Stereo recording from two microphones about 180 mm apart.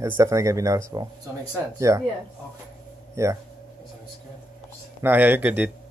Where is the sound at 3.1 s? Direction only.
15° right (ahead or behind).